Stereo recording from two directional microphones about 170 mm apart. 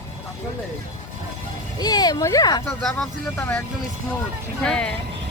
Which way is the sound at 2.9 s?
10° left (ahead or behind).